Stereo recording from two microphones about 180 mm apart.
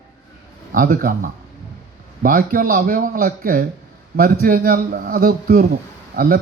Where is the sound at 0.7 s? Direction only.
50° right (ahead or behind).